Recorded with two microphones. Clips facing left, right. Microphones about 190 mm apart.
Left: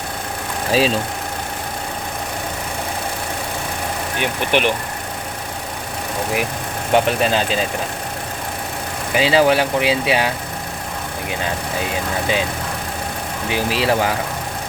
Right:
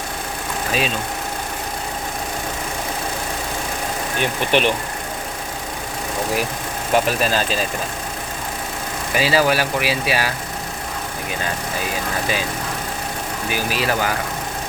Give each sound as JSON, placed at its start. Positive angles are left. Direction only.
{"t": 0.7, "sound": "speech", "side_deg": 35}
{"t": 4.2, "sound": "speech", "side_deg": 10}
{"t": 6.9, "sound": "speech", "side_deg": 20}
{"t": 9.1, "sound": "speech", "side_deg": 20}
{"t": 13.5, "sound": "speech", "side_deg": 25}